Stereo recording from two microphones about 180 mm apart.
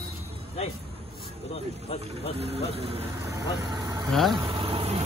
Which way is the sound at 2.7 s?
30° right (ahead or behind).